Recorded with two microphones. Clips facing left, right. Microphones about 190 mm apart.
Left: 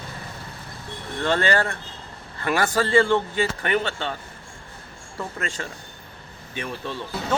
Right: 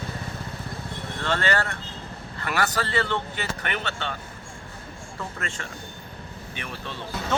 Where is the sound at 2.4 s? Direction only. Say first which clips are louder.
Left 5 dB; 15° left (ahead or behind).